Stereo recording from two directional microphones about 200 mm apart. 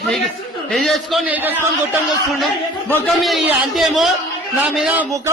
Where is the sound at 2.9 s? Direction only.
10° left (ahead or behind).